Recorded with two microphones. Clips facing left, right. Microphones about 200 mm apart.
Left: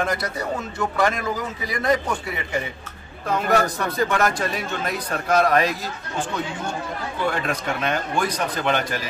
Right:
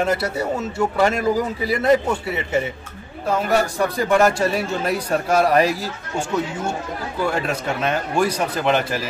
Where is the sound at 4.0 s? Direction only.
10° right (ahead or behind).